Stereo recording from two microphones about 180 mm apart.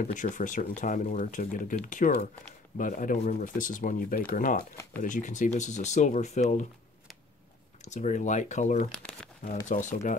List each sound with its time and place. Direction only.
0.0 s speech: 45° left (ahead or behind)
7.8 s speech: 40° left (ahead or behind)